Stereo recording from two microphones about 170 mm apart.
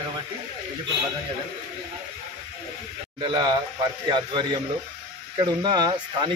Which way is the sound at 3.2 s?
25° right (ahead or behind).